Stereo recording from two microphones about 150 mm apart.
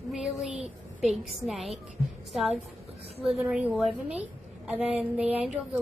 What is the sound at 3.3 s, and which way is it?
A woman's voice, 5° right (ahead or behind).